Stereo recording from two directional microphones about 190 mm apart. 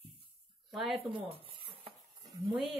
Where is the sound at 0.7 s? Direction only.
Centre (ahead or behind).